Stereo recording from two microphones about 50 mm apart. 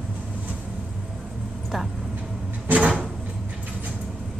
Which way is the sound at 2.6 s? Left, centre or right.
Right.